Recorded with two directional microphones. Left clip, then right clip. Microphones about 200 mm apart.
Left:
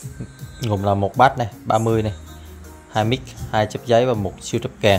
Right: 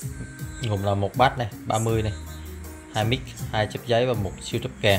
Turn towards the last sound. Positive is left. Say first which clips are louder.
# left 5 dB
turn(degrees=35)  # may be behind; listen again after turning